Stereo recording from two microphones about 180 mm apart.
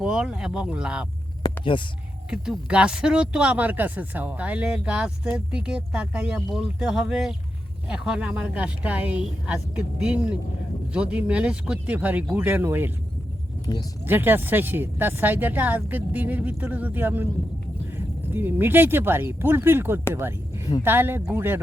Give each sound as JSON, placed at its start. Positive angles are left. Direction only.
{"t": 0.0, "sound": "speech", "side_deg": -5}
{"t": 1.5, "sound": "speech", "side_deg": 25}
{"t": 2.3, "sound": "speech", "side_deg": -5}
{"t": 14.0, "sound": "speech", "side_deg": -10}